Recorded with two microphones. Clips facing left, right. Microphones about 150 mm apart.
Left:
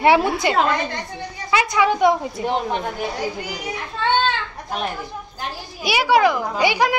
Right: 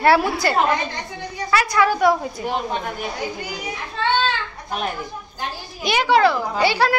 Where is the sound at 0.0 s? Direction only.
20° left (ahead or behind).